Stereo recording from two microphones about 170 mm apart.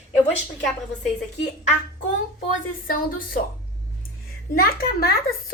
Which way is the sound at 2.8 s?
55° left (ahead or behind).